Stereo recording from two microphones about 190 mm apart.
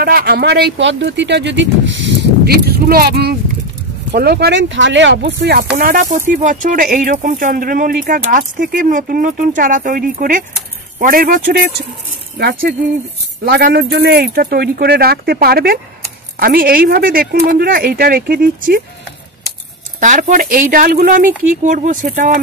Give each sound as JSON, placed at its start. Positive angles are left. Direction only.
{"t": 0.0, "sound": "speech", "side_deg": -55}
{"t": 5.4, "sound": "speech", "side_deg": -55}
{"t": 5.8, "sound": "speech", "side_deg": -45}
{"t": 13.5, "sound": "speech", "side_deg": -50}
{"t": 20.0, "sound": "speech", "side_deg": -40}